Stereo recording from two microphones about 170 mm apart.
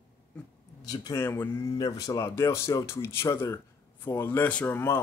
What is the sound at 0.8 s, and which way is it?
A man's voice, 25° left (ahead or behind).